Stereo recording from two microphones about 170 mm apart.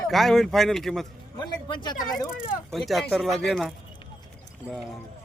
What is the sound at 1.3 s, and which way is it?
Speech, 25° left (ahead or behind).